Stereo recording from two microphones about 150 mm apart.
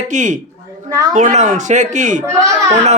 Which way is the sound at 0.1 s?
55° right (ahead or behind).